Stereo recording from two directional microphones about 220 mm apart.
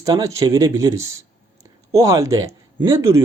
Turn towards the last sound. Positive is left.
turn(degrees=-10)  # may be behind; listen again after turning